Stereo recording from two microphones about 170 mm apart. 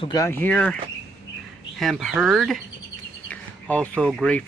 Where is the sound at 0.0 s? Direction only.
20° left (ahead or behind).